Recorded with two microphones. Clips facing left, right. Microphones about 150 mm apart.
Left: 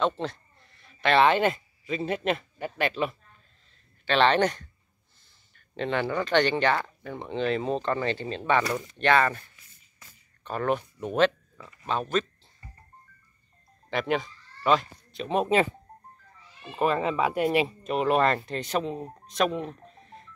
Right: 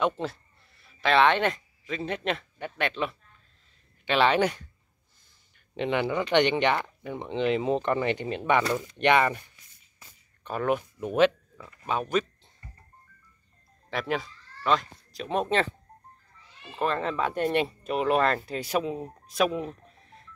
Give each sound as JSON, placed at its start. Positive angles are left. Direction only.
{"t": 0.0, "sound": "speech", "side_deg": -10}
{"t": 4.0, "sound": "speech", "side_deg": -10}
{"t": 9.9, "sound": "a sound", "side_deg": -5}
{"t": 11.6, "sound": "speech", "side_deg": -10}
{"t": 13.8, "sound": "speech", "side_deg": 0}
{"t": 16.7, "sound": "speech", "side_deg": 10}
{"t": 19.2, "sound": "telephone dialing", "side_deg": -5}